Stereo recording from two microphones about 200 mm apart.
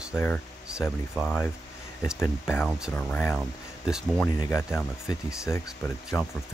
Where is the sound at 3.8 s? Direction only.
5° right (ahead or behind).